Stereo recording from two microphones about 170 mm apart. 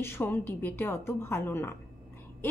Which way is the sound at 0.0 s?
15° left (ahead or behind).